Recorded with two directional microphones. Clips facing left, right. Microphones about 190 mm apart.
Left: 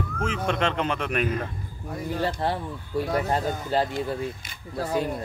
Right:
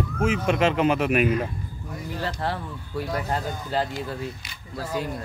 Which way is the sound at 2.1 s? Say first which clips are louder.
Left 2 dB; 25° left (ahead or behind).